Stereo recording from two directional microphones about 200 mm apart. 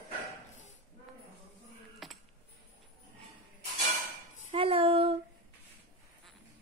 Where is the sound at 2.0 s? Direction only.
Centre (ahead or behind).